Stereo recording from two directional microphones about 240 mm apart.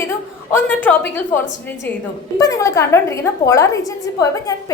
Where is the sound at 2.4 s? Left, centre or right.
Centre.